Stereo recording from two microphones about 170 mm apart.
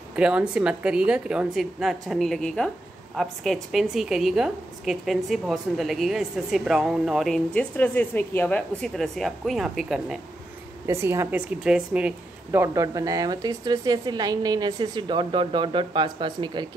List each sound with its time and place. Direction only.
0.1 s a woman's voice: 5° right (ahead or behind)
10.9 s a woman's voice: 15° right (ahead or behind)